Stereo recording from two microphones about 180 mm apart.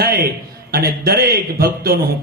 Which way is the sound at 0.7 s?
60° right (ahead or behind).